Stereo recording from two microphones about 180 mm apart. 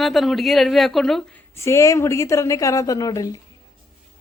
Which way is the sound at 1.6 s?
15° left (ahead or behind).